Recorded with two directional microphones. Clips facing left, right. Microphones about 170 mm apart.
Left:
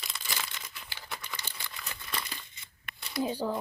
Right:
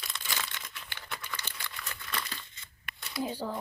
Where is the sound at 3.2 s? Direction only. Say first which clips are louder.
Left 3 dB; 15° left (ahead or behind).